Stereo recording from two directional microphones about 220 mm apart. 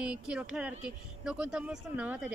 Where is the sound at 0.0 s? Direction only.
5° right (ahead or behind).